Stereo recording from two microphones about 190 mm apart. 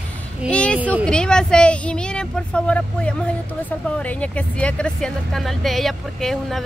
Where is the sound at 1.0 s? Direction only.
5° left (ahead or behind).